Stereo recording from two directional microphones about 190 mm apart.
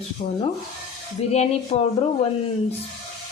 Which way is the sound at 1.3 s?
35° left (ahead or behind).